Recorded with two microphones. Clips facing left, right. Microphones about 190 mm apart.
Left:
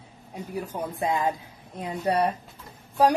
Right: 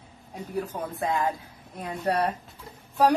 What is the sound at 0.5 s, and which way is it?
Speech, 15° left (ahead or behind).